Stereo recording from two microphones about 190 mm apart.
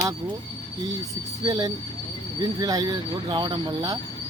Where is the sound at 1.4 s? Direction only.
20° right (ahead or behind).